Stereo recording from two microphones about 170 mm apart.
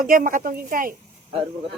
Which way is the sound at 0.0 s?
55° right (ahead or behind).